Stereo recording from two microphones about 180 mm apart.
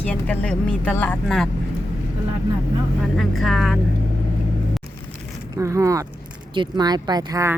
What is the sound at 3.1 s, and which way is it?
Speech, centre (ahead or behind).